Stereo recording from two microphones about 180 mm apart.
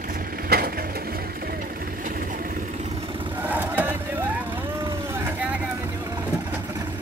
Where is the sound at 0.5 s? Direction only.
60° right (ahead or behind).